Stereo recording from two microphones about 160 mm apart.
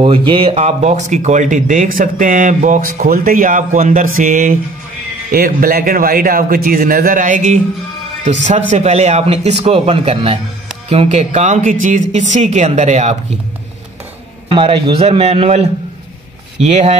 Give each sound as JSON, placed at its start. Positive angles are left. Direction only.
{"t": 0.0, "sound": "speech", "side_deg": -35}
{"t": 5.3, "sound": "speech", "side_deg": -65}
{"t": 14.5, "sound": "a man's voice", "side_deg": -30}